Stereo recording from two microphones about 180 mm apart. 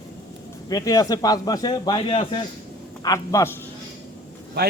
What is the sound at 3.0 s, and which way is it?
Speech, 20° left (ahead or behind).